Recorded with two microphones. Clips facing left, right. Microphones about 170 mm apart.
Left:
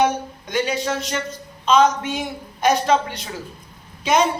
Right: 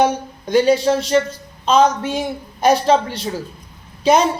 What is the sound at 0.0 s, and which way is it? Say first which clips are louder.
A woman's voice: right 3 dB; 35° right (ahead or behind).